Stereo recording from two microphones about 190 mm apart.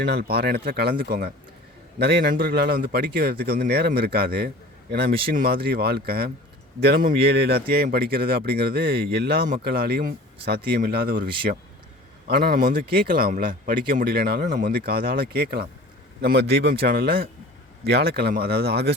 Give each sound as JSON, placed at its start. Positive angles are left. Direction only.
{"t": 0.0, "sound": "speech", "side_deg": -55}
{"t": 14.4, "sound": "speech", "side_deg": -45}